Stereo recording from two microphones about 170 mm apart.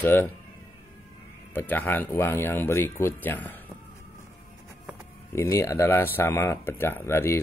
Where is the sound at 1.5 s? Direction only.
10° left (ahead or behind).